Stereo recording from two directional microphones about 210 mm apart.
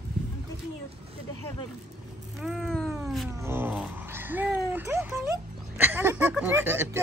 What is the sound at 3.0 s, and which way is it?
Cat, centre (ahead or behind).